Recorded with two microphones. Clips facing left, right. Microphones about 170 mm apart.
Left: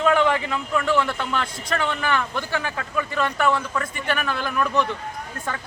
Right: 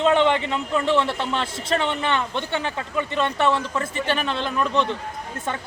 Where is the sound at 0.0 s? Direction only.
25° right (ahead or behind).